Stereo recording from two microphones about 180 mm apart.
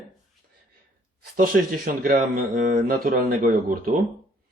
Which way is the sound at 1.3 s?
50° right (ahead or behind).